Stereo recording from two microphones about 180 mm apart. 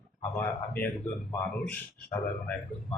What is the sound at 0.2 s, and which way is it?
Speech, 10° left (ahead or behind).